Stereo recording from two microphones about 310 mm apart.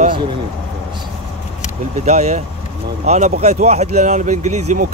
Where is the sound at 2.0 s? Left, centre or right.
Right.